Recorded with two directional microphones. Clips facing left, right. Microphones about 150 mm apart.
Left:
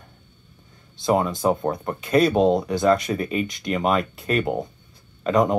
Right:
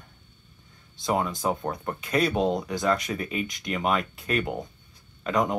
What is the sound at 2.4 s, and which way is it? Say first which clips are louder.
Speech: left 7 dB; 25° left (ahead or behind).